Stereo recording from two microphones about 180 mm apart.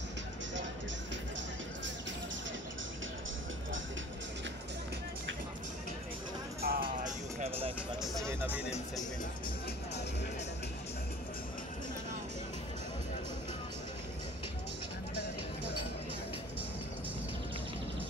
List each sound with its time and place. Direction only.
6.6 s music: 55° right (ahead or behind)
8.0 s speech: centre (ahead or behind)
8.3 s speech: 10° right (ahead or behind)